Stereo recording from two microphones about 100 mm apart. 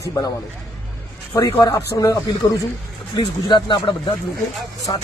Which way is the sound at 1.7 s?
25° left (ahead or behind).